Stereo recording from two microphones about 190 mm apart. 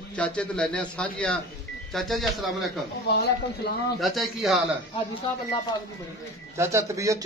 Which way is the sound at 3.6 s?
60° left (ahead or behind).